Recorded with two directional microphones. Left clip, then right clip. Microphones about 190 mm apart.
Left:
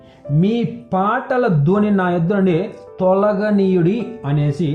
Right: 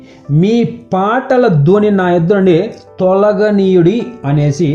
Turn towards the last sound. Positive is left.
turn(degrees=-35)  # may be behind; listen again after turning